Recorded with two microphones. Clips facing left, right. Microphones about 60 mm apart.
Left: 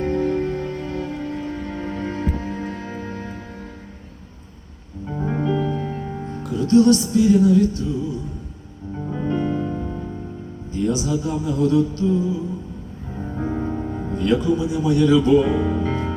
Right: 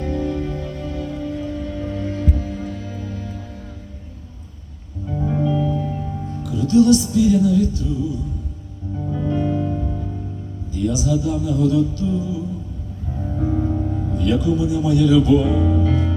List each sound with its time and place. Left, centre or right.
0.0 s music: left
5.0 s music: left
5.5 s music: left
9.0 s music: left
10.7 s speech: left
13.2 s music: left